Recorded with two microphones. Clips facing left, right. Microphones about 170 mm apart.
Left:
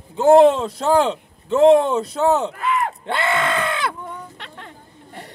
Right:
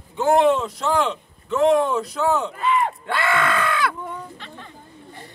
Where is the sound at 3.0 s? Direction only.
25° left (ahead or behind).